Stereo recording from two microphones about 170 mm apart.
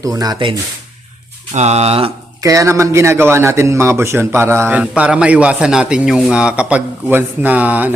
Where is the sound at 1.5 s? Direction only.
40° right (ahead or behind).